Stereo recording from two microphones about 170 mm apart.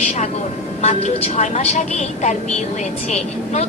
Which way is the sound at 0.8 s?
40° left (ahead or behind).